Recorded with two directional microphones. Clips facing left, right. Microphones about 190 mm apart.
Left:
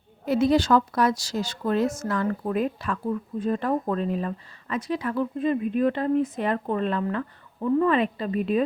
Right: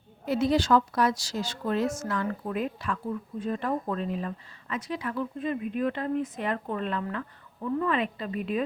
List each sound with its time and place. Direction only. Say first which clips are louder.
0.3 s speech: left 3 dB; 45° left (ahead or behind)
5.4 s speech: left 6 dB; 35° left (ahead or behind)